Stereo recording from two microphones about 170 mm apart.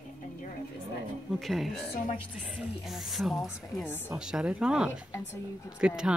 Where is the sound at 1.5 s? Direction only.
Centre (ahead or behind).